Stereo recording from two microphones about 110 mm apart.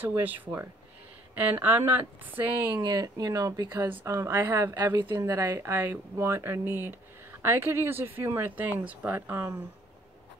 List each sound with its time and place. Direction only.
0.0 s speech: 15° right (ahead or behind)
2.8 s speech: 35° right (ahead or behind)